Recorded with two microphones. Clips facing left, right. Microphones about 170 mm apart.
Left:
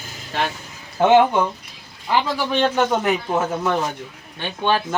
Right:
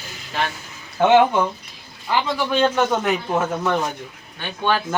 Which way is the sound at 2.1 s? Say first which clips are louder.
Even; centre (ahead or behind).